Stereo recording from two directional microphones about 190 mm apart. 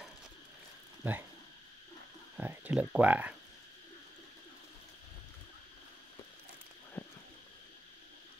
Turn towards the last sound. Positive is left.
turn(degrees=10)  # may be behind; listen again after turning